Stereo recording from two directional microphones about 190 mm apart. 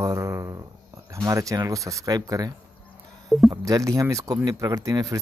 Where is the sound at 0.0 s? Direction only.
15° right (ahead or behind).